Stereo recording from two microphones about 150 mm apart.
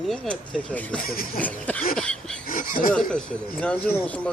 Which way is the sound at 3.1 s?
5° left (ahead or behind).